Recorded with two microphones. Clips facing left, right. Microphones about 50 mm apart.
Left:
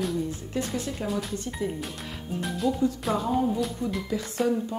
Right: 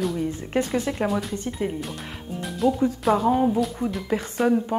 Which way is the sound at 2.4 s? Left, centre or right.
Centre.